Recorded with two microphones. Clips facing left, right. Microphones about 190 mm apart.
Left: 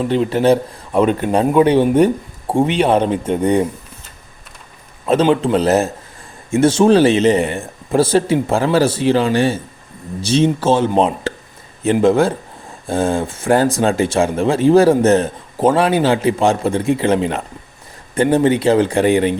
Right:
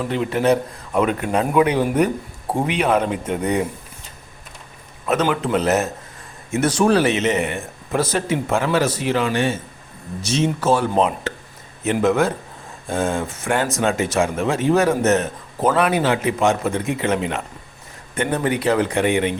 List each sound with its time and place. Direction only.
0.0 s a man's voice: 30° left (ahead or behind)
5.0 s a man's voice: 30° left (ahead or behind)